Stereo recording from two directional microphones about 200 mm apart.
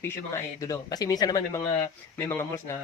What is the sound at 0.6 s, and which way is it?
Speech, 20° left (ahead or behind).